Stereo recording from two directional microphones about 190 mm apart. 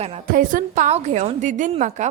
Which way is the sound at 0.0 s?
45° right (ahead or behind).